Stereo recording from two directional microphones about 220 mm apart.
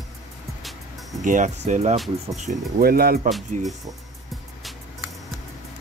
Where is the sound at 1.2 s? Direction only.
35° right (ahead or behind).